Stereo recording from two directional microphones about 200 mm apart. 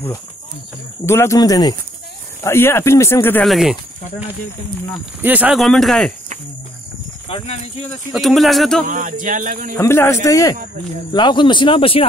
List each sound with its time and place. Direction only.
1.0 s speech: 15° left (ahead or behind)
3.4 s speech: centre (ahead or behind)
5.2 s speech: 5° right (ahead or behind)
7.2 s speech: 30° left (ahead or behind)
8.1 s speech: centre (ahead or behind)
8.8 s speech: 40° right (ahead or behind)
9.8 s speech: 10° left (ahead or behind)